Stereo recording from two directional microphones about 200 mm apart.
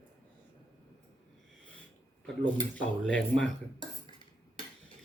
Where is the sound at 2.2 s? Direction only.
5° left (ahead or behind).